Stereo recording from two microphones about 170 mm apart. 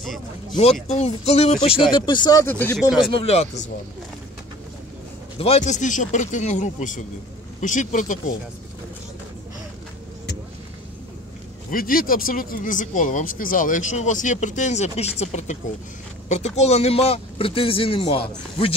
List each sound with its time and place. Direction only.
0.0 s speech: centre (ahead or behind)
0.8 s speech: 40° left (ahead or behind); by 2.4 s 25° left (ahead or behind)
2.4 s speech: 10° left (ahead or behind)
3.3 s speech: 40° left (ahead or behind)
5.4 s speech: 40° left (ahead or behind)
11.7 s speech: 55° left (ahead or behind); by 18.7 s 35° left (ahead or behind)